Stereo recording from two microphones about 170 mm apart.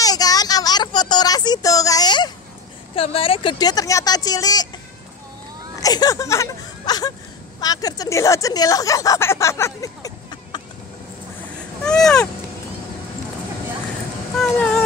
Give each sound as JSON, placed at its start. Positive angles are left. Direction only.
{"t": 0.0, "sound": "a sound", "side_deg": 20}
{"t": 3.0, "sound": "speech", "side_deg": 35}
{"t": 5.8, "sound": "speech", "side_deg": 20}
{"t": 11.8, "sound": "speech", "side_deg": 5}
{"t": 14.3, "sound": "speech", "side_deg": 5}